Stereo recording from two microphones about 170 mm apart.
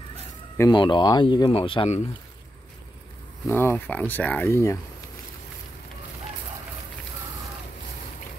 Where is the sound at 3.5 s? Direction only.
15° left (ahead or behind).